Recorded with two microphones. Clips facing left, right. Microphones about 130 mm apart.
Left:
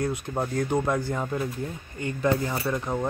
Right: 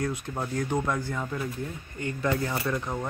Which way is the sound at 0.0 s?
25° left (ahead or behind).